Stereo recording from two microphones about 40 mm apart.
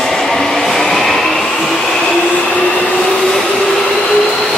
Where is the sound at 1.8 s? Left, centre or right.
Centre.